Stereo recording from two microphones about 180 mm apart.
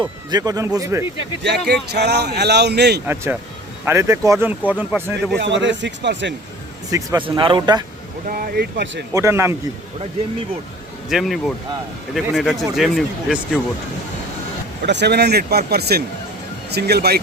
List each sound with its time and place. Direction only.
0.3 s a man's voice: 20° right (ahead or behind)
1.5 s speech: 65° right (ahead or behind)
3.8 s speech: 15° right (ahead or behind)
5.4 s speech: 80° right
6.9 s a man's voice: 20° right (ahead or behind)
8.3 s speech: 55° right (ahead or behind)
9.1 s speech: 15° right (ahead or behind)
11.1 s speech: centre (ahead or behind)
14.8 s speech: 70° right (ahead or behind)